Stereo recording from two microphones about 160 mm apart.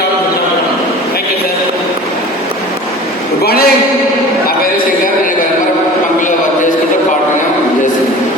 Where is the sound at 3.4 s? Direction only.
75° left (ahead or behind).